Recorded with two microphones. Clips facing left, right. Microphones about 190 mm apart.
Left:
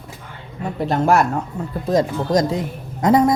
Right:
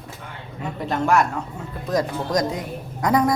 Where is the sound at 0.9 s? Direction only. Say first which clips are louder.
Left 3 dB; 35° left (ahead or behind).